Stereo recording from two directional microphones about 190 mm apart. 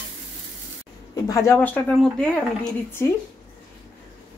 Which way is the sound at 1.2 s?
15° left (ahead or behind).